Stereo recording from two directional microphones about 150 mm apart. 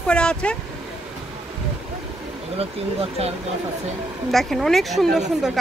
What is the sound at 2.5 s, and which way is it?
Speech, 40° right (ahead or behind).